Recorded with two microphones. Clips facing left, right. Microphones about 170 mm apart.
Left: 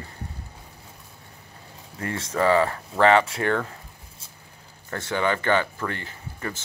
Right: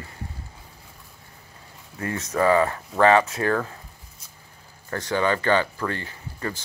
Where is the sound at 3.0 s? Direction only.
30° left (ahead or behind).